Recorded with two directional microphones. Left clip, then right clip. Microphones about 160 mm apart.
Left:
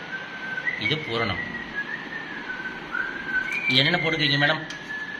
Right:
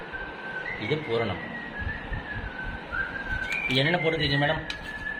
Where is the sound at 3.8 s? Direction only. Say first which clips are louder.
Left 3 dB; 20° right (ahead or behind).